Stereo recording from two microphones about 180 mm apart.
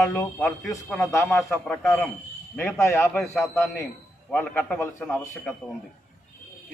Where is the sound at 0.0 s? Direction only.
10° left (ahead or behind).